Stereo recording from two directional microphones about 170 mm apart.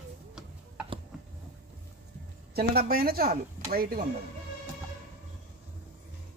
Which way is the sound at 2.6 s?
65° right (ahead or behind).